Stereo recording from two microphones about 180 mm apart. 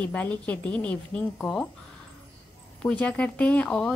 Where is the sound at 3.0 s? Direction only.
5° left (ahead or behind).